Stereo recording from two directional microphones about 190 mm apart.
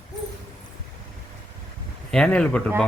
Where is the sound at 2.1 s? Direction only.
5° left (ahead or behind).